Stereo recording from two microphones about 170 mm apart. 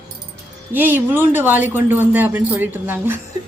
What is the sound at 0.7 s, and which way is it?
Speech, 10° right (ahead or behind).